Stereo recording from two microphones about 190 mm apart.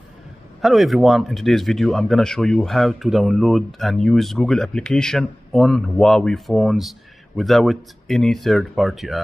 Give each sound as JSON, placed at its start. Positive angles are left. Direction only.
{"t": 0.6, "sound": "speech", "side_deg": 0}